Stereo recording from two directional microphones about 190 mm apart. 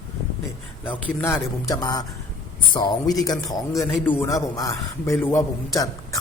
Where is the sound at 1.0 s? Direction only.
15° left (ahead or behind).